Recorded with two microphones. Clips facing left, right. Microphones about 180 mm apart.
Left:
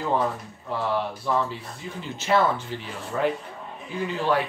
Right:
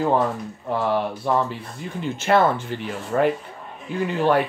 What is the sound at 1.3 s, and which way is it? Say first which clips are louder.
Speech: right 3 dB; 55° right (ahead or behind).